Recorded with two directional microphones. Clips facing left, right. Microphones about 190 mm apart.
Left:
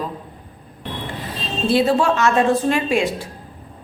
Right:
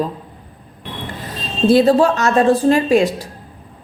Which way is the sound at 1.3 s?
40° right (ahead or behind).